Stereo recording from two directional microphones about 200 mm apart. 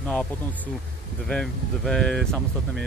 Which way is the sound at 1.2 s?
5° left (ahead or behind).